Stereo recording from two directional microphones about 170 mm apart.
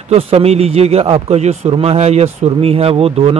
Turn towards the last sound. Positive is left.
turn(degrees=-35)  # may be behind; listen again after turning